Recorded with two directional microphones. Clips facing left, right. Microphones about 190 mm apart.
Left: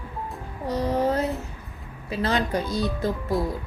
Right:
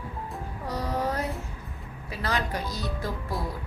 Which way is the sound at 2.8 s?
25° left (ahead or behind).